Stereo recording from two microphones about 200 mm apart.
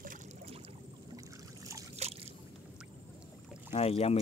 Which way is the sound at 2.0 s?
35° right (ahead or behind).